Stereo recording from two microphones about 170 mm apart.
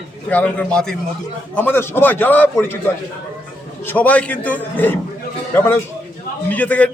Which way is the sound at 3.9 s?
10° left (ahead or behind).